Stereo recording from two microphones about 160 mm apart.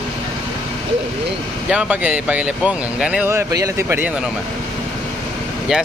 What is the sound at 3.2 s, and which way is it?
Speech, 15° right (ahead or behind).